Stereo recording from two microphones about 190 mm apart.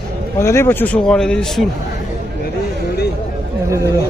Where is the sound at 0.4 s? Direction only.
15° left (ahead or behind).